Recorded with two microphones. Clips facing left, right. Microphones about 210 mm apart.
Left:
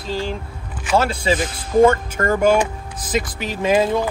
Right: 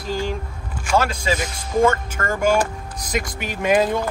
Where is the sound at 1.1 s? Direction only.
30° left (ahead or behind).